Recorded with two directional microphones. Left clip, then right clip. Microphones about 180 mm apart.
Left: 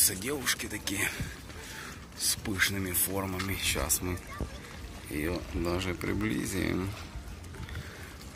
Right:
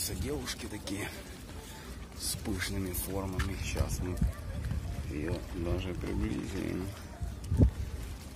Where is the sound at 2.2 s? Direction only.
5° right (ahead or behind); by 4.1 s 10° left (ahead or behind).